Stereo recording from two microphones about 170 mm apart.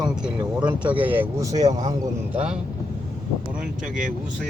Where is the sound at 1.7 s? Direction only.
45° right (ahead or behind).